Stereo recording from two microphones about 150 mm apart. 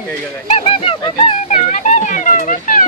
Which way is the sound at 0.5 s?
40° left (ahead or behind).